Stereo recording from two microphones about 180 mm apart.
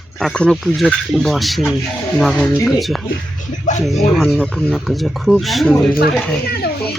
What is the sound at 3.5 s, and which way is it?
Speech, 40° left (ahead or behind).